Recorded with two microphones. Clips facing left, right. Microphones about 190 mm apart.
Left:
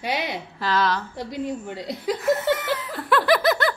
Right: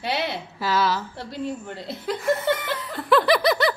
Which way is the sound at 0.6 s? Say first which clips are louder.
Even; 5° right (ahead or behind).